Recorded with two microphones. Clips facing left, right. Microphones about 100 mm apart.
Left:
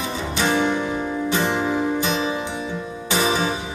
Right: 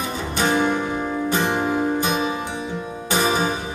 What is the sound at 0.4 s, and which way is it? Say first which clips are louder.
Music: right 1 dB; 45° right (ahead or behind).